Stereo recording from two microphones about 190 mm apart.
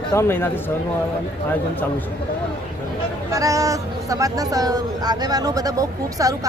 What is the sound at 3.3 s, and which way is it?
Speech, 15° right (ahead or behind).